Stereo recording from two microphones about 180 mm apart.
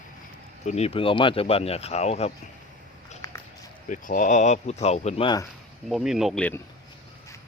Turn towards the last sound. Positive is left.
turn(degrees=5)  # may be behind; listen again after turning